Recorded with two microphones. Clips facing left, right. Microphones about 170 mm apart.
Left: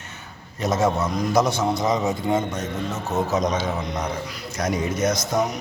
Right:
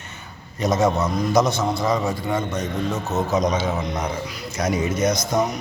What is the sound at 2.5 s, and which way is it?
Speech, 10° left (ahead or behind).